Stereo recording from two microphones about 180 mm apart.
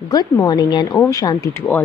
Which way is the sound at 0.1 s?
20° left (ahead or behind).